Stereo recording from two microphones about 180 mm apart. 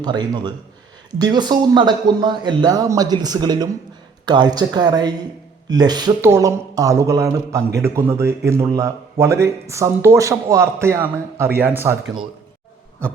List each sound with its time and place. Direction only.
0.0 s a man's voice: 25° right (ahead or behind)